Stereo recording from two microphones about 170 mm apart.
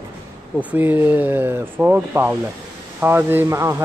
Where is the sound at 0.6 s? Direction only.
10° right (ahead or behind).